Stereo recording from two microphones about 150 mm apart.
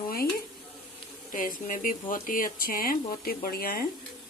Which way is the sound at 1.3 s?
65° left (ahead or behind).